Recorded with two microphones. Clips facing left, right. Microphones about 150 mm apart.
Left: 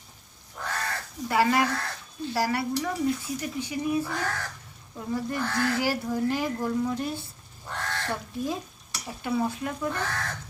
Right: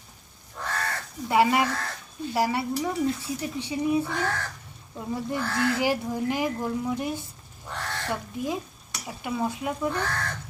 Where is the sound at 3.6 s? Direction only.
25° right (ahead or behind).